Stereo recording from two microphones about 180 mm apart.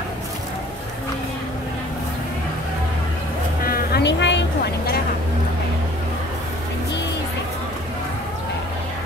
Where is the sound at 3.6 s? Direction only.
55° left (ahead or behind); by 5.0 s 70° left (ahead or behind).